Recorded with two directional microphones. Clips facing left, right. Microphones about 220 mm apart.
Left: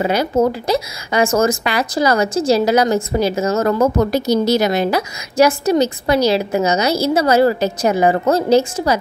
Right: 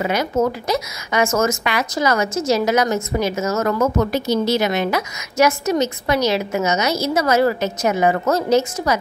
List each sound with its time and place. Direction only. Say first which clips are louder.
0.0 s a woman's voice: left 3 dB; 30° left (ahead or behind)